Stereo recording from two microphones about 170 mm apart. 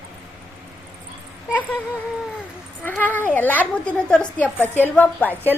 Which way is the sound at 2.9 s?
10° left (ahead or behind).